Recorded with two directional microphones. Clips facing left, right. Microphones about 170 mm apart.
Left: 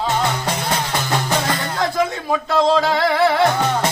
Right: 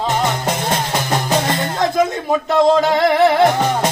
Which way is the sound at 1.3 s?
20° right (ahead or behind).